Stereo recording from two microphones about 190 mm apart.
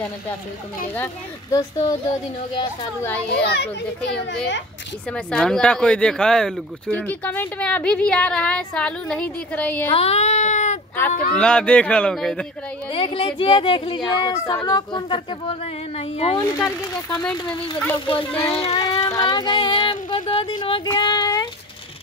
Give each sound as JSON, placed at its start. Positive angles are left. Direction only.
{"t": 0.9, "sound": "speech", "side_deg": 15}
{"t": 3.0, "sound": "speech", "side_deg": 10}
{"t": 5.1, "sound": "speech", "side_deg": 5}
{"t": 9.9, "sound": "speech", "side_deg": 35}
{"t": 11.0, "sound": "speech", "side_deg": 10}
{"t": 12.9, "sound": "speech", "side_deg": 30}
{"t": 16.3, "sound": "speech", "side_deg": 15}
{"t": 18.8, "sound": "speech", "side_deg": 20}